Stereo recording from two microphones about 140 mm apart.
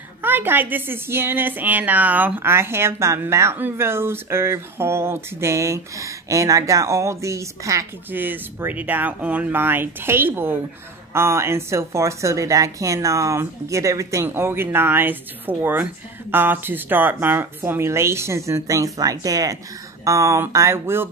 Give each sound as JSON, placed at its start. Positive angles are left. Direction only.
{"t": 0.2, "sound": "a woman's voice", "side_deg": -15}